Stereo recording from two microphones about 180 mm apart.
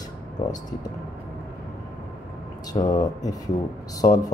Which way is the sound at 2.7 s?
20° left (ahead or behind).